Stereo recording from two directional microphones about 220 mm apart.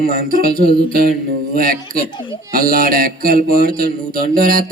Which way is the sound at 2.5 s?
40° right (ahead or behind).